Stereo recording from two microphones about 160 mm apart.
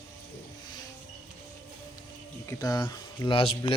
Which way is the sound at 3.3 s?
35° left (ahead or behind).